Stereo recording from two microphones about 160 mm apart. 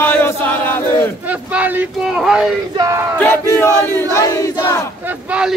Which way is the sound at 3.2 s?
10° left (ahead or behind).